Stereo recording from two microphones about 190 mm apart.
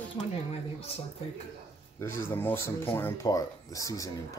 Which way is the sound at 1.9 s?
10° left (ahead or behind).